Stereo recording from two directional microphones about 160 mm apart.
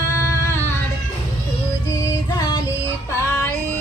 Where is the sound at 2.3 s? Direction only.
30° left (ahead or behind).